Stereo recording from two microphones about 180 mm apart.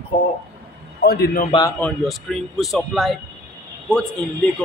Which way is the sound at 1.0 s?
60° left (ahead or behind).